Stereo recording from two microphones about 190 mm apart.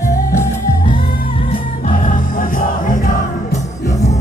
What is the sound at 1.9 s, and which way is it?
Music, 45° left (ahead or behind).